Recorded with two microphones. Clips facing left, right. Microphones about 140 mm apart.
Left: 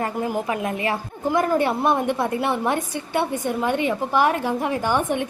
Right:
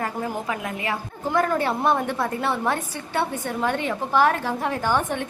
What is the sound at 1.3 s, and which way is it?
A woman's voice, 15° left (ahead or behind).